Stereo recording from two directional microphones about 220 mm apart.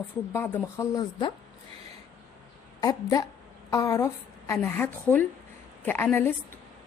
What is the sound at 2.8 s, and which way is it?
A woman's voice, 15° left (ahead or behind).